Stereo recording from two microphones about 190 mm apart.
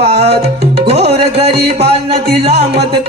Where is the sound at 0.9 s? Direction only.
35° right (ahead or behind).